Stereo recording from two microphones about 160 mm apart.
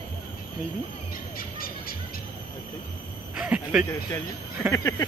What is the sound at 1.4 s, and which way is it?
Owl, 65° left (ahead or behind).